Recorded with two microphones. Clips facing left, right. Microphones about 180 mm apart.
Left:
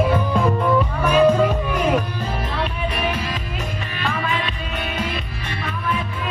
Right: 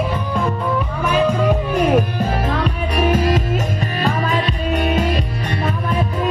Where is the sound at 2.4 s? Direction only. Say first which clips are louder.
Right 4 dB; 45° right (ahead or behind).